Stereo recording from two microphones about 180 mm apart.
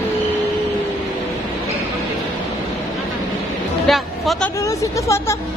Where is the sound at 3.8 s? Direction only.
Centre (ahead or behind).